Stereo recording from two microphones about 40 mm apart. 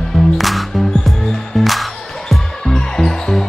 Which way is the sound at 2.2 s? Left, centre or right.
Centre.